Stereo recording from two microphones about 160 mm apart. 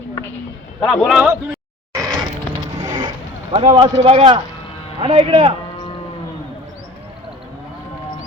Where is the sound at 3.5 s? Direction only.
30° right (ahead or behind).